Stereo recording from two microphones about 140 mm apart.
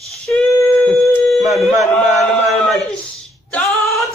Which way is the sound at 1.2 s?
Centre (ahead or behind).